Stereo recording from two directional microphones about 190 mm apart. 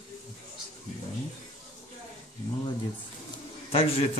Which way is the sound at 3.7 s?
30° left (ahead or behind).